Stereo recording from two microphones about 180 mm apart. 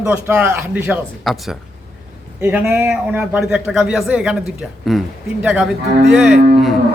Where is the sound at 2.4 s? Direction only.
10° right (ahead or behind).